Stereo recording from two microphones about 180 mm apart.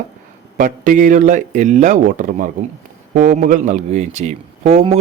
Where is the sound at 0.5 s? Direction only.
45° right (ahead or behind).